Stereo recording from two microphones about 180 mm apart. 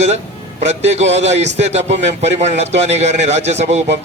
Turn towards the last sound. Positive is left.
turn(degrees=-40)  # may be behind; listen again after turning